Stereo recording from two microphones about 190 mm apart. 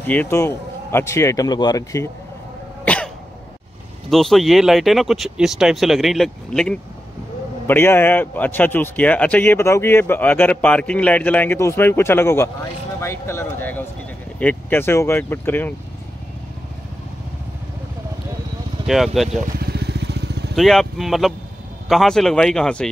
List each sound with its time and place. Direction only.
0.0 s a man's voice: 10° left (ahead or behind)
2.8 s cough: 5° left (ahead or behind)
4.1 s a man's voice: centre (ahead or behind)
18.9 s speech: centre (ahead or behind)
19.6 s vehicle: 60° right (ahead or behind)
20.5 s speech: centre (ahead or behind)